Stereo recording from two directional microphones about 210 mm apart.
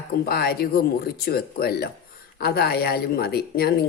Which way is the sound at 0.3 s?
45° left (ahead or behind).